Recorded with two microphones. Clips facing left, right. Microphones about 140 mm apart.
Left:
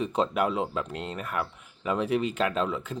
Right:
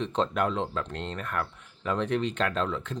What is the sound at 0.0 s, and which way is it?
Speech, 10° left (ahead or behind).